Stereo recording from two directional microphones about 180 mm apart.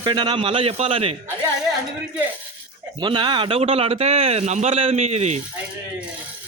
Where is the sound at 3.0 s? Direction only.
25° right (ahead or behind).